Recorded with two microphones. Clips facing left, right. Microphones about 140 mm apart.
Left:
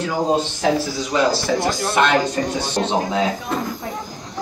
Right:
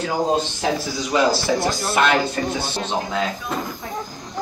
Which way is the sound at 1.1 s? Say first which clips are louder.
Even; 5° right (ahead or behind).